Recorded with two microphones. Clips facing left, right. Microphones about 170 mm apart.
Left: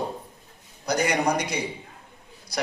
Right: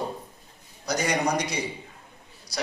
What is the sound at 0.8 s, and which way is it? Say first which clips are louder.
Speech: left 2 dB; 55° left (ahead or behind).